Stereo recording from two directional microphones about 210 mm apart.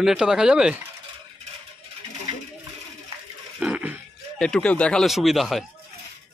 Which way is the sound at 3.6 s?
5° right (ahead or behind).